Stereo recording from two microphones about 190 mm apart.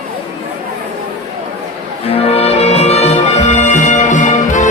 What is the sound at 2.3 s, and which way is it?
Music, 35° left (ahead or behind).